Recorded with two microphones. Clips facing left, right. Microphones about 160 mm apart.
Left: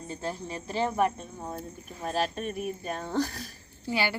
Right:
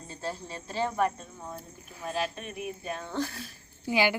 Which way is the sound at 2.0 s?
45° left (ahead or behind).